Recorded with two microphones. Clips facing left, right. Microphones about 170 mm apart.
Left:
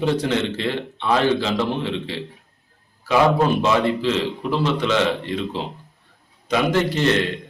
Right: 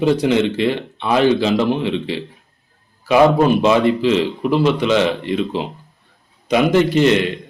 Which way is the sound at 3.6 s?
15° right (ahead or behind).